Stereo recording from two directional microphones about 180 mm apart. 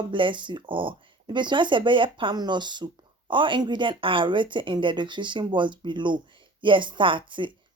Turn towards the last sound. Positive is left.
turn(degrees=-25)  # may be behind; listen again after turning